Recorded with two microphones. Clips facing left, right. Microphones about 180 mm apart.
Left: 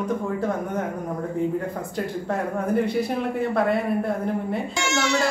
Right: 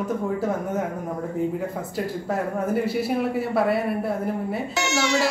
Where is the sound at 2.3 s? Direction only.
5° right (ahead or behind).